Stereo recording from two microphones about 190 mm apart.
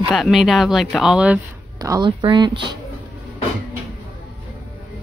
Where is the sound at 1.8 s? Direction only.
20° right (ahead or behind).